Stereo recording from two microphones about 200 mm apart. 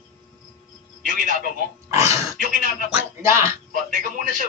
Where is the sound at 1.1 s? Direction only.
40° right (ahead or behind).